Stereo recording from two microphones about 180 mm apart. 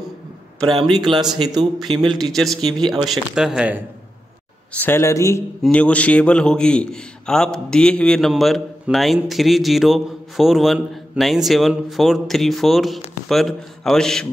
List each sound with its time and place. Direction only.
0.6 s a man's voice: centre (ahead or behind)
4.7 s a man's voice: 10° left (ahead or behind)